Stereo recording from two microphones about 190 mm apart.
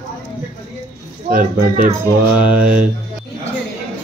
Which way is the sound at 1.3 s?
45° right (ahead or behind).